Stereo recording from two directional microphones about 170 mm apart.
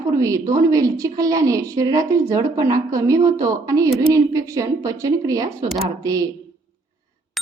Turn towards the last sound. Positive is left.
turn(degrees=-20)  # may be behind; listen again after turning